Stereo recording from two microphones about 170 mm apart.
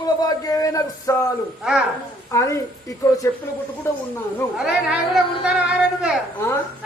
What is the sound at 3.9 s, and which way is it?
Speech, 15° left (ahead or behind).